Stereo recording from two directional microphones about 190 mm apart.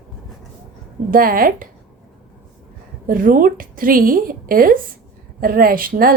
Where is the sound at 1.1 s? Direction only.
50° right (ahead or behind).